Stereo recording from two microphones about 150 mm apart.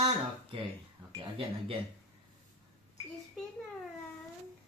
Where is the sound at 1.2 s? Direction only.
35° right (ahead or behind).